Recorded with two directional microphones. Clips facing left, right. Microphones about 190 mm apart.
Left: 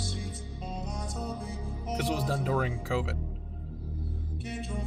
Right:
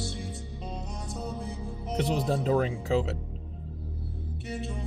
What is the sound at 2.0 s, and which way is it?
Speech, 20° right (ahead or behind).